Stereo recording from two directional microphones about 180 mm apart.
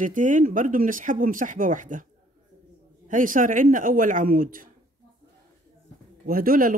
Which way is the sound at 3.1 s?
45° right (ahead or behind).